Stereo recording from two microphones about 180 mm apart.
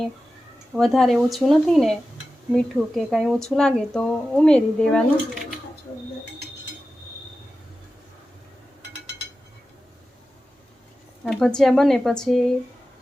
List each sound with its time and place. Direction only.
0.8 s speech: centre (ahead or behind)
11.3 s speech: 5° left (ahead or behind)